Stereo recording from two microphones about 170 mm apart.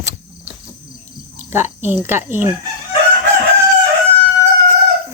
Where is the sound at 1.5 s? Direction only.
15° right (ahead or behind).